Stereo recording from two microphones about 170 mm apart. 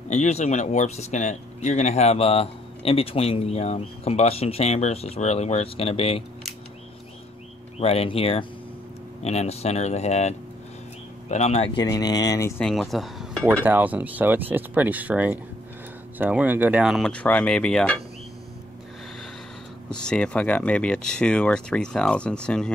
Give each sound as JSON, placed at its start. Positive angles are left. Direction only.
{"t": 0.1, "sound": "speech", "side_deg": 40}
{"t": 7.8, "sound": "speech", "side_deg": 35}
{"t": 11.8, "sound": "speech", "side_deg": 20}
{"t": 12.6, "sound": "speech", "side_deg": 0}
{"t": 13.7, "sound": "speech", "side_deg": -10}
{"t": 19.9, "sound": "speech", "side_deg": 5}